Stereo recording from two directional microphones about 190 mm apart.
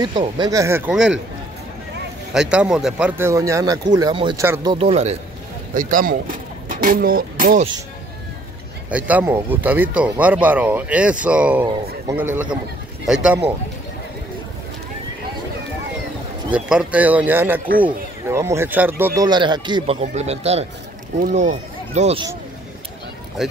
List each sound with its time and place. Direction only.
0.0 s speech: 25° right (ahead or behind); by 1.1 s 5° right (ahead or behind)
2.5 s speech: 5° right (ahead or behind); by 4.4 s 25° right (ahead or behind)
4.4 s speech: 15° right (ahead or behind)
4.7 s speech: 35° right (ahead or behind)
5.8 s speech: 45° right (ahead or behind)
8.9 s speech: 10° right (ahead or behind)
16.5 s speech: 5° right (ahead or behind)
19.2 s speech: 25° right (ahead or behind)